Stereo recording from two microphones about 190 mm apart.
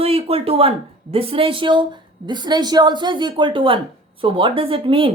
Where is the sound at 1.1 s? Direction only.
30° right (ahead or behind).